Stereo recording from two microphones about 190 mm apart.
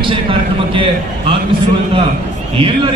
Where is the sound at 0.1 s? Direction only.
25° right (ahead or behind).